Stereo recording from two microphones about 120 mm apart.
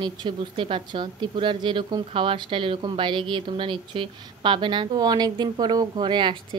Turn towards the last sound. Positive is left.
turn(degrees=-40)  # may be behind; listen again after turning